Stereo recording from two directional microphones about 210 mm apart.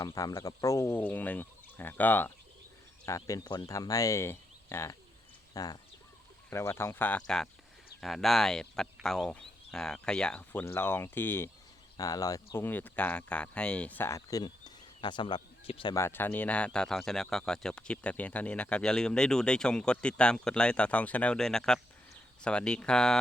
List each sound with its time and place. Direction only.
0.0 s speech: 15° left (ahead or behind)